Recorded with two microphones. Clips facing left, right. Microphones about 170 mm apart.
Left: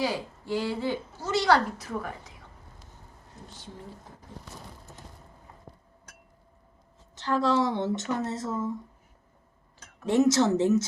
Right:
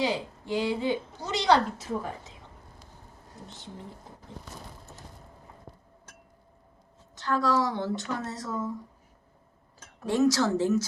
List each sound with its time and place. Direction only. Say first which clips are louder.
0.0 s a woman's voice: right 1 dB; 20° right (ahead or behind)
7.2 s speech: left 1 dB; 25° left (ahead or behind)
10.1 s speech: left 2 dB; 25° left (ahead or behind)